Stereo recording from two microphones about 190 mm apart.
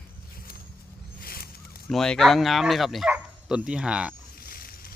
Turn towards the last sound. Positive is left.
turn(degrees=50)  # may be behind; listen again after turning